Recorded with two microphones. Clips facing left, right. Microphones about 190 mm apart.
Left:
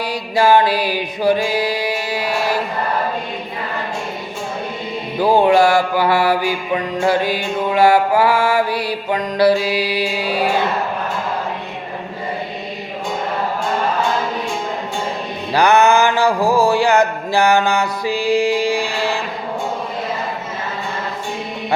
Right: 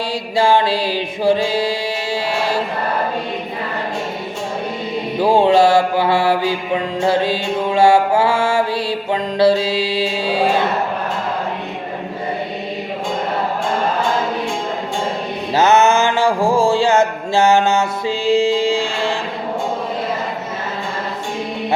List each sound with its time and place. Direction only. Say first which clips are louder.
0.1 s music: left 2 dB; 25° right (ahead or behind)
5.2 s mantra: even; 25° right (ahead or behind)
15.5 s mantra: even; 20° right (ahead or behind)